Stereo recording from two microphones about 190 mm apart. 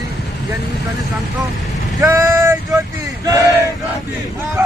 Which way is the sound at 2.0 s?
15° right (ahead or behind).